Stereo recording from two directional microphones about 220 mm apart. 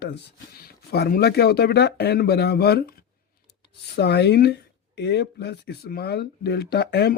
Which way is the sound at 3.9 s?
50° left (ahead or behind).